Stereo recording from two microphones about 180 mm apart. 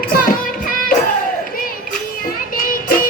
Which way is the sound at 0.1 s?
50° left (ahead or behind).